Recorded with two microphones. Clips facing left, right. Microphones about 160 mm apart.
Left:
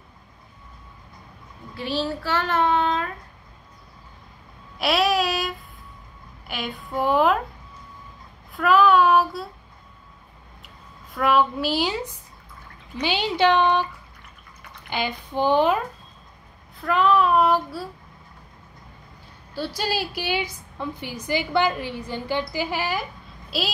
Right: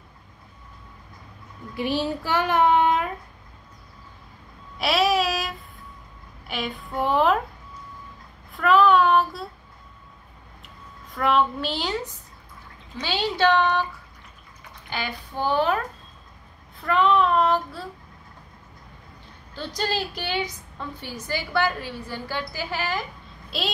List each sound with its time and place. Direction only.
1.8 s child singing: 15° right (ahead or behind)
4.7 s a sound: centre (ahead or behind)
6.4 s a woman's voice: centre (ahead or behind)
8.5 s a woman's voice: centre (ahead or behind)
11.1 s a woman's voice: 5° left (ahead or behind)
14.9 s a woman's voice: 20° left (ahead or behind)
16.8 s a woman's voice: centre (ahead or behind)
19.5 s a woman's voice: 10° left (ahead or behind)